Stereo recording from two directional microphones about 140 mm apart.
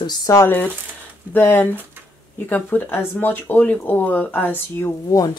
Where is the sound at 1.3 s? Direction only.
15° left (ahead or behind).